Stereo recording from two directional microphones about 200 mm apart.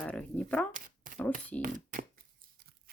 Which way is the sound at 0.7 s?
40° right (ahead or behind).